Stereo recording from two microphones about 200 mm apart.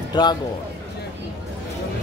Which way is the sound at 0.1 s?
20° left (ahead or behind).